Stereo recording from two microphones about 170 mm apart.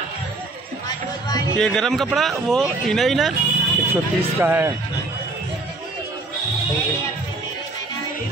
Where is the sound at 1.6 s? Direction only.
5° left (ahead or behind).